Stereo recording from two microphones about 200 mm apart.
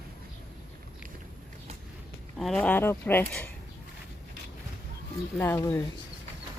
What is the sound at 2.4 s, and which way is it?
Speech, 5° left (ahead or behind).